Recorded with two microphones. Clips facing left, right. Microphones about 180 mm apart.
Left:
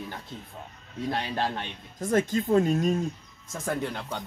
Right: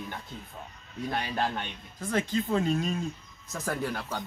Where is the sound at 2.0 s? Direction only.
45° left (ahead or behind).